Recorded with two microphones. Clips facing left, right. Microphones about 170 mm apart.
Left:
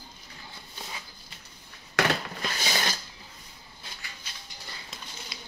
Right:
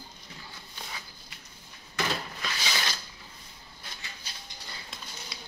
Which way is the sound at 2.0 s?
80° left.